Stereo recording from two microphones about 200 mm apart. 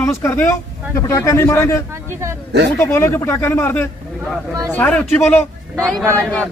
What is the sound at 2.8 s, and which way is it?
Speech, 10° left (ahead or behind).